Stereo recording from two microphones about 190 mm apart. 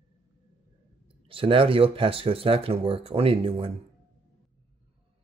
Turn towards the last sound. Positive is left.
turn(degrees=-30)  # may be behind; listen again after turning